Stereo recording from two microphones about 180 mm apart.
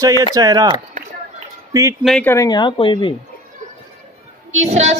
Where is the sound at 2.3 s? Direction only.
20° left (ahead or behind).